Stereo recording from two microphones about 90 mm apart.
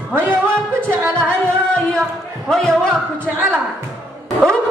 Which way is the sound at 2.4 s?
5° left (ahead or behind).